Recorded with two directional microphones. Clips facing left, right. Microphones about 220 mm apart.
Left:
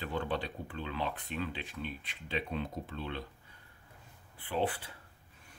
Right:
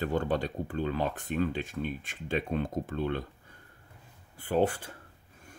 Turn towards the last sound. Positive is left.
turn(degrees=-45)  # may be behind; listen again after turning